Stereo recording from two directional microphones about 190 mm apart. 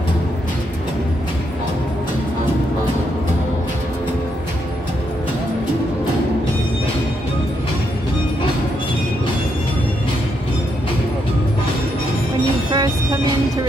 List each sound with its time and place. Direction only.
12.7 s vehicle: 20° right (ahead or behind)